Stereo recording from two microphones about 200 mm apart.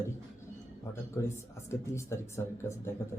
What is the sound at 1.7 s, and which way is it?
Speech, 15° left (ahead or behind).